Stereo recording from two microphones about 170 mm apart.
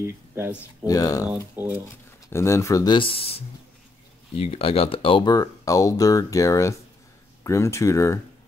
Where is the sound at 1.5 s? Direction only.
10° right (ahead or behind).